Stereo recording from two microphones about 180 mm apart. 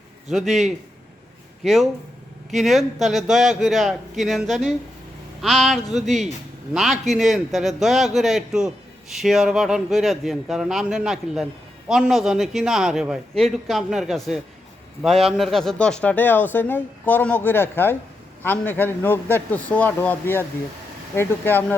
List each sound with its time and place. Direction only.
0.3 s a man's voice: centre (ahead or behind)